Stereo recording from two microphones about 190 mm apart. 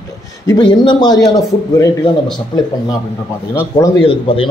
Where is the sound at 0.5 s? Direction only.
25° left (ahead or behind).